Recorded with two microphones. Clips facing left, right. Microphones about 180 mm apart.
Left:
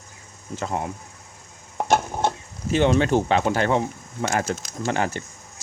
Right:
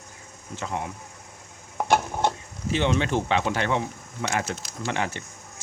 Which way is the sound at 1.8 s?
20° left (ahead or behind).